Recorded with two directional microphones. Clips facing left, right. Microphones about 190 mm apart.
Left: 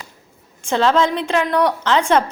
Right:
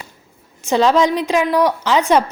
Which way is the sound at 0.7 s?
15° right (ahead or behind).